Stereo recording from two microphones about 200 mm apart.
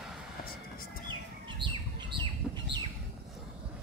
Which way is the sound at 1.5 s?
25° right (ahead or behind).